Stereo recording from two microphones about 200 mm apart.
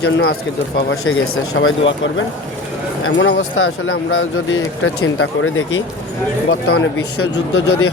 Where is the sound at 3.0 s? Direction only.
85° left.